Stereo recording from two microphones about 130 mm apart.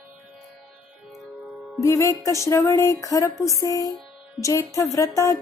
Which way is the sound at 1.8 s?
25° left (ahead or behind).